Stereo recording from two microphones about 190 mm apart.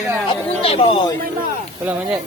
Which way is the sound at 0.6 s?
30° left (ahead or behind).